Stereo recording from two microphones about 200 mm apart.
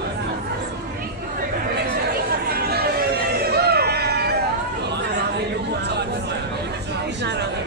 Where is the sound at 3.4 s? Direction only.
50° right (ahead or behind).